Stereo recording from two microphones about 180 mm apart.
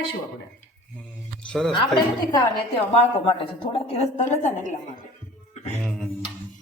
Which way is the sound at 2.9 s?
30° left (ahead or behind).